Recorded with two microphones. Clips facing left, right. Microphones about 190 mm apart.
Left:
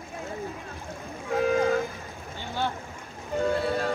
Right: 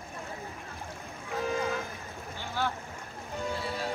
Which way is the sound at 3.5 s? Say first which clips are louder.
Left 8 dB; 60° left (ahead or behind).